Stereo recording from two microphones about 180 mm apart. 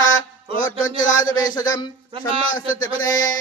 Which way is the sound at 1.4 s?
20° left (ahead or behind).